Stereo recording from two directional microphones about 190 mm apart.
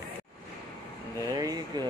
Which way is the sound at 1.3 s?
20° right (ahead or behind).